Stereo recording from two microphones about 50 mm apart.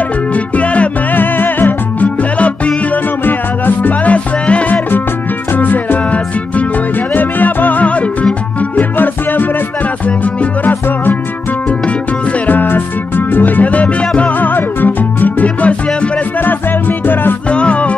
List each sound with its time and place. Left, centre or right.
0.3 s music: left
1.1 s music: left
3.3 s music: left
5.5 s music: left
7.2 s music: left
8.7 s music: left
12.4 s music: left
14.5 s music: left
17.0 s music: left
17.5 s music: left